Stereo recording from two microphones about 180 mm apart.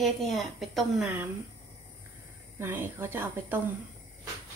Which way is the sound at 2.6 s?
10° right (ahead or behind).